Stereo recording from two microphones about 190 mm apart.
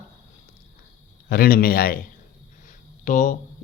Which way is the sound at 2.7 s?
40° left (ahead or behind).